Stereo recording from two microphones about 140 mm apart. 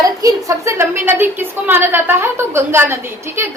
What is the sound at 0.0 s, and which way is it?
A woman's voice, 25° right (ahead or behind).